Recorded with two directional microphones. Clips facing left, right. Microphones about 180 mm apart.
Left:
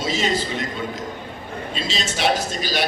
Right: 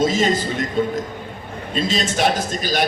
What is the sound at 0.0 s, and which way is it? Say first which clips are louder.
Speech: right 6 dB; 50° right (ahead or behind).